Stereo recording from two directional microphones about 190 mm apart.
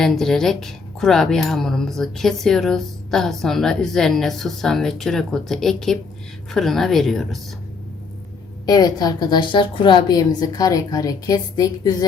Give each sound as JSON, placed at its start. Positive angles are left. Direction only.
{"t": 0.0, "sound": "speech", "side_deg": 0}
{"t": 8.6, "sound": "a woman's voice", "side_deg": 20}